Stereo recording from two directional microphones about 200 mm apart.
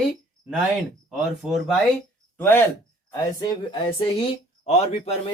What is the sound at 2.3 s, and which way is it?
Speech, 10° left (ahead or behind).